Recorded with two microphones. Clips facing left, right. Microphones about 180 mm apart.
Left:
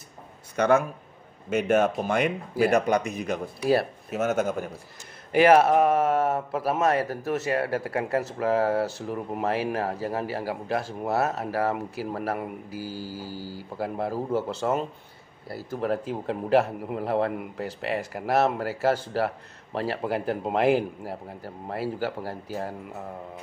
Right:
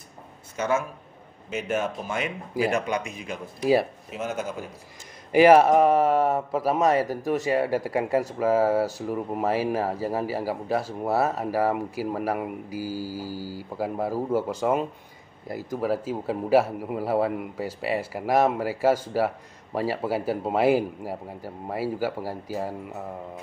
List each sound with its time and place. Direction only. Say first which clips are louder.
0.6 s speech: left 4 dB; 60° left (ahead or behind)
2.6 s speech: left 4 dB; 40° left (ahead or behind)
4.2 s a man's voice: left 5 dB; 70° left (ahead or behind)
5.3 s a man's voice: right 2 dB; 10° right (ahead or behind)
6.8 s a man's voice: right 2 dB; 15° right (ahead or behind)
15.8 s a man's voice: even; 5° right (ahead or behind)